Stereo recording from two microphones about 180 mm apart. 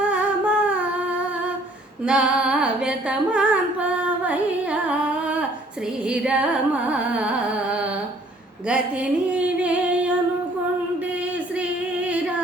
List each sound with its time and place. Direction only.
0.1 s humming: 5° right (ahead or behind)
2.0 s singing: 5° right (ahead or behind)
6.1 s carnatic music: 5° right (ahead or behind)
9.3 s singing: 5° right (ahead or behind)